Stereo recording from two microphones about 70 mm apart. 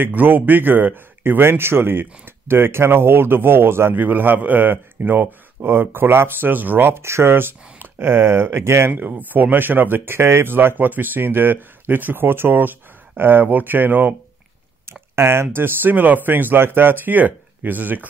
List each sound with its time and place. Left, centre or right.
0.0 s a man's voice: right
8.9 s speech: right
14.9 s a sound: right
15.4 s speech: right